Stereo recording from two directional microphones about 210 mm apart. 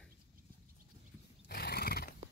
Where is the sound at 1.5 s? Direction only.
50° left (ahead or behind).